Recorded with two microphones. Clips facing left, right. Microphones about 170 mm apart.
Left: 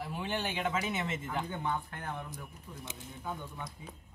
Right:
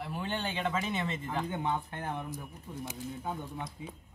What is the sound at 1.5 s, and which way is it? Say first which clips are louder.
Speech: right 2 dB; 25° right (ahead or behind).